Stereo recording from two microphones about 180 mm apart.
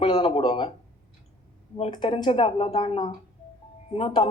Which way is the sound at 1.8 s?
30° left (ahead or behind).